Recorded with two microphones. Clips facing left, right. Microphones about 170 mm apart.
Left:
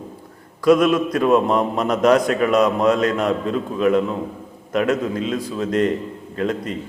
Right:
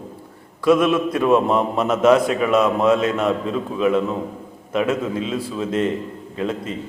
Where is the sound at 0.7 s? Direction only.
5° right (ahead or behind).